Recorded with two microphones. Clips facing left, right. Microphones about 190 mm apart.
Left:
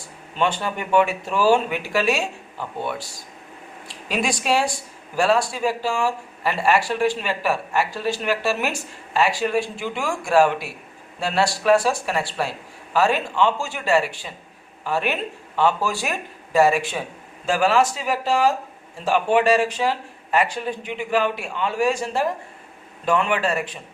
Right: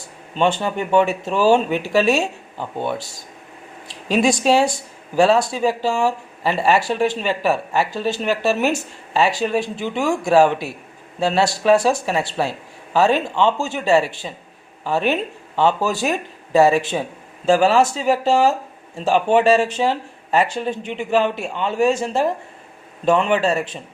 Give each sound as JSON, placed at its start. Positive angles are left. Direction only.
{"t": 0.3, "sound": "speech", "side_deg": -25}
{"t": 4.2, "sound": "speech", "side_deg": -25}